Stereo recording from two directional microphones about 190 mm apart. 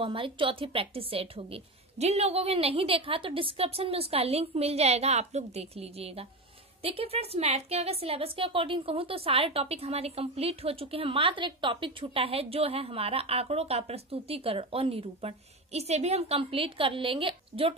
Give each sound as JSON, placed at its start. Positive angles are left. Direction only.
{"t": 0.0, "sound": "a woman's voice", "side_deg": -25}